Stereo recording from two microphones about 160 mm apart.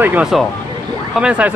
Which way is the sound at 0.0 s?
10° right (ahead or behind).